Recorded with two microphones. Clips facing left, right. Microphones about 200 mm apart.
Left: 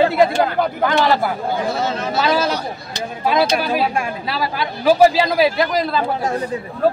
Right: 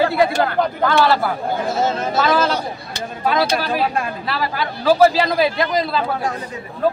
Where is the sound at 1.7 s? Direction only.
45° right (ahead or behind).